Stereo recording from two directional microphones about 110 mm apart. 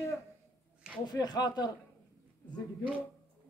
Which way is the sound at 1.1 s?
40° left (ahead or behind).